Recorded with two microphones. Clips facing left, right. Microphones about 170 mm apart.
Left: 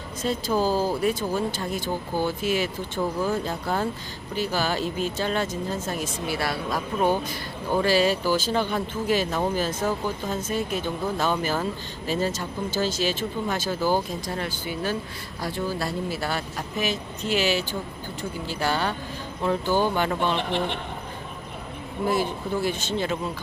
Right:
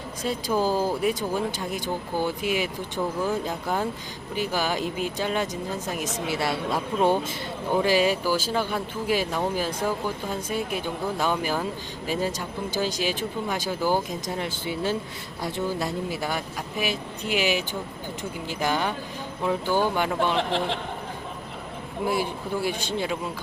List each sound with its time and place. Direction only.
0.2 s speech: 10° right (ahead or behind)
7.8 s speech: 15° right (ahead or behind)
20.3 s a man's voice: 90° right
22.0 s speech: 10° right (ahead or behind)